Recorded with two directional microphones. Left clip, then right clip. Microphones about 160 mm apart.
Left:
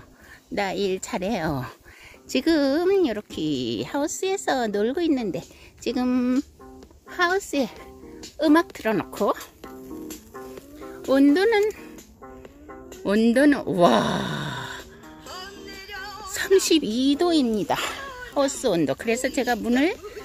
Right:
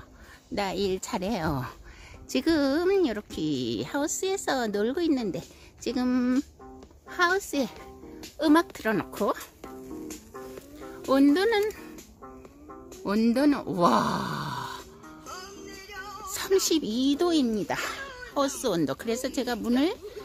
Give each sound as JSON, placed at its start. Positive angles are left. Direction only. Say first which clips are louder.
{"t": 0.6, "sound": "a woman's voice", "louder": "left 3 dB", "side_deg": 5}
{"t": 8.2, "sound": "music", "louder": "left 3 dB", "side_deg": 5}
{"t": 11.1, "sound": "speech", "louder": "left 4 dB", "side_deg": 10}
{"t": 13.0, "sound": "speech", "louder": "left 6 dB", "side_deg": 10}
{"t": 15.2, "sound": "music", "louder": "left 4 dB", "side_deg": 30}
{"t": 16.3, "sound": "music", "louder": "left 6 dB", "side_deg": 10}
{"t": 16.6, "sound": "speech", "louder": "left 5 dB", "side_deg": 5}